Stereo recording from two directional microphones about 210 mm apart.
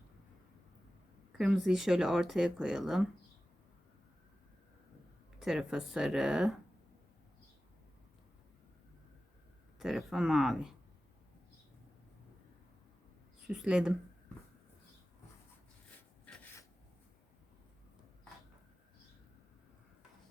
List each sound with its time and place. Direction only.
1.3 s speech: 5° right (ahead or behind)
5.4 s speech: centre (ahead or behind)
9.7 s speech: centre (ahead or behind)
13.5 s speech: 5° right (ahead or behind)
16.2 s rub: 5° left (ahead or behind)